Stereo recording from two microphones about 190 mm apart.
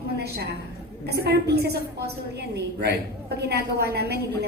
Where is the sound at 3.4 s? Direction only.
60° right (ahead or behind).